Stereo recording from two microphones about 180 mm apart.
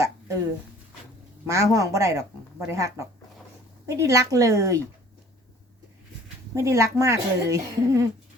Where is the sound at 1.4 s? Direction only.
15° right (ahead or behind).